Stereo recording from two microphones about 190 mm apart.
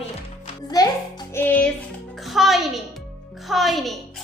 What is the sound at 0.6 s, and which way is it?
A child's voice, 20° left (ahead or behind).